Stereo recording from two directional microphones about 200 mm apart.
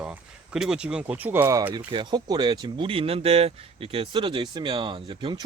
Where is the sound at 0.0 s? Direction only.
5° right (ahead or behind).